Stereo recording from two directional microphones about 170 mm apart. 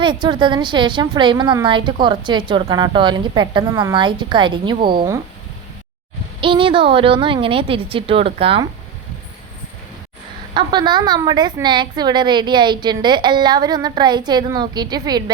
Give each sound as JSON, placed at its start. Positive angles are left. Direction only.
{"t": 0.0, "sound": "a woman's voice", "side_deg": -25}
{"t": 6.4, "sound": "a woman's voice", "side_deg": -30}
{"t": 10.5, "sound": "a woman's voice", "side_deg": -25}